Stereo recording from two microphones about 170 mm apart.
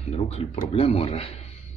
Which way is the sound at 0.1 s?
35° left (ahead or behind).